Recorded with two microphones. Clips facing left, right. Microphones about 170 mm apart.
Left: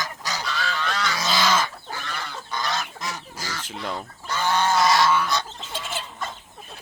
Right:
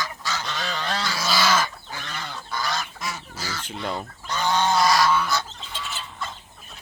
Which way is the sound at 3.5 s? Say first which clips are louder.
Right 1 dB; 5° left (ahead or behind).